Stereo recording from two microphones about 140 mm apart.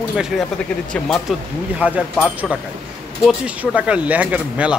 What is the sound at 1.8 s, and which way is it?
Speech, 10° right (ahead or behind).